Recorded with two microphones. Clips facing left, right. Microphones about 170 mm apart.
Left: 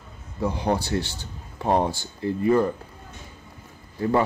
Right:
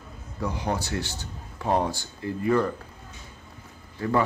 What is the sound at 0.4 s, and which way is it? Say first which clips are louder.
Speech: left 4 dB; 30° left (ahead or behind).